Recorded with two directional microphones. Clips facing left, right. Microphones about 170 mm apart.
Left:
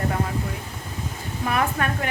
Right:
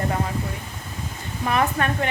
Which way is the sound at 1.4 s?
Centre (ahead or behind).